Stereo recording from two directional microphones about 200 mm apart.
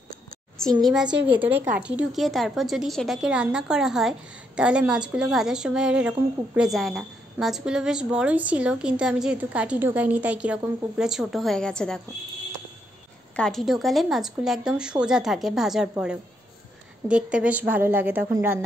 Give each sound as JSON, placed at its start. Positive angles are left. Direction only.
{"t": 0.7, "sound": "a child's voice", "side_deg": -20}
{"t": 1.1, "sound": "a woman's voice", "side_deg": -5}
{"t": 13.4, "sound": "a woman's voice", "side_deg": 0}